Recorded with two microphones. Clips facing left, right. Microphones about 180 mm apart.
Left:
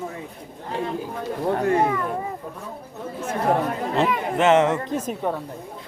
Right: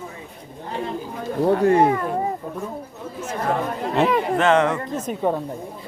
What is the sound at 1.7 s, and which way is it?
Speech, 35° right (ahead or behind).